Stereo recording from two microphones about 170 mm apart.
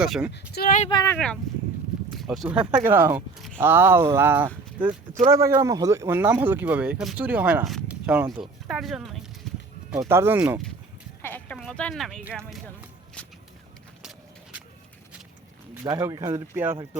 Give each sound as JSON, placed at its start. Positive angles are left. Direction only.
{"t": 0.0, "sound": "speech", "side_deg": -5}
{"t": 0.5, "sound": "speech", "side_deg": 65}
{"t": 0.9, "sound": "speech", "side_deg": 25}
{"t": 1.1, "sound": "speech", "side_deg": 5}
{"t": 2.8, "sound": "speech", "side_deg": -15}
{"t": 3.3, "sound": "speech", "side_deg": 0}
{"t": 3.6, "sound": "speech", "side_deg": -15}
{"t": 10.1, "sound": "speech", "side_deg": -15}
{"t": 11.2, "sound": "a sound", "side_deg": 10}
{"t": 12.2, "sound": "speech", "side_deg": -10}
{"t": 13.2, "sound": "a sound", "side_deg": 5}
{"t": 15.8, "sound": "speech", "side_deg": -20}